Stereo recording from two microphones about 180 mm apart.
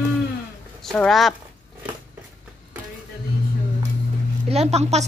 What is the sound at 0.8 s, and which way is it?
Speech, centre (ahead or behind).